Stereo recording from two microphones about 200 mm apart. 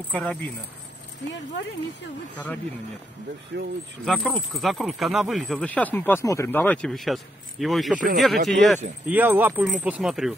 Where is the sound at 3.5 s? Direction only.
60° right (ahead or behind).